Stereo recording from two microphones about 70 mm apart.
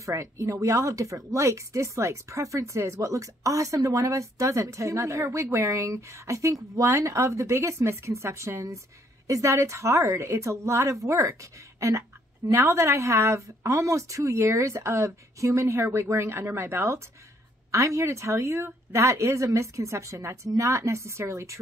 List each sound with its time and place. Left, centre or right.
0.0 s speech: right
12.4 s speech: right